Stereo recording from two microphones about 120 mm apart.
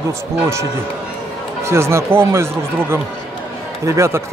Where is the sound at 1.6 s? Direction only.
20° right (ahead or behind).